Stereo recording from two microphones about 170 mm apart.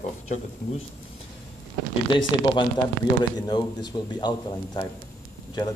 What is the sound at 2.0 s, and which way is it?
Speech, 25° left (ahead or behind).